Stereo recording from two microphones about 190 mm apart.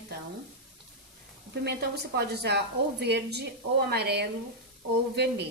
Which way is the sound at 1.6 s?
60° right (ahead or behind).